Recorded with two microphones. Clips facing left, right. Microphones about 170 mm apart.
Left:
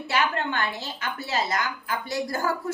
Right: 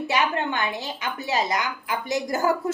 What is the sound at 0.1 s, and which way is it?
A woman's voice, 15° right (ahead or behind).